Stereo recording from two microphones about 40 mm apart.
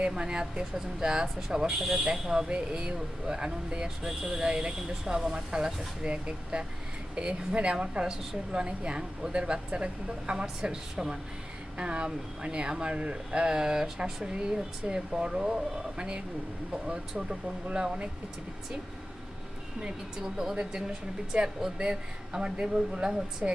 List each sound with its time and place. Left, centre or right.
0.0 s speech: centre
19.8 s speech: centre
23.4 s speech: right